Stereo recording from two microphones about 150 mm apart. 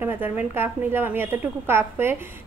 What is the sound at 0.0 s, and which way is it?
A woman's voice, 10° right (ahead or behind).